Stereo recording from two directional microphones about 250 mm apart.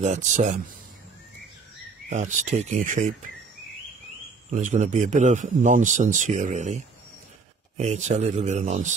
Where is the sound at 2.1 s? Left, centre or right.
Right.